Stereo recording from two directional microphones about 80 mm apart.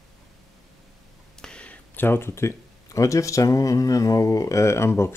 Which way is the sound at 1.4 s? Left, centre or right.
Centre.